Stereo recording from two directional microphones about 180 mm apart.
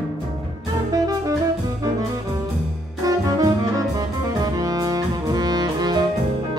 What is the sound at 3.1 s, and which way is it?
Music, 20° right (ahead or behind).